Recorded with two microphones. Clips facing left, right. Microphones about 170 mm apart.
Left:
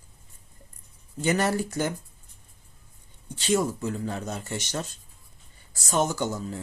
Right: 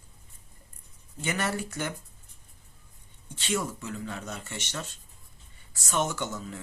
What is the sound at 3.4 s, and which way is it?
Speech, 35° left (ahead or behind).